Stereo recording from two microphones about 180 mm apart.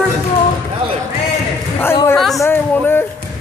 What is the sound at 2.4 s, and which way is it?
Speech, 10° left (ahead or behind).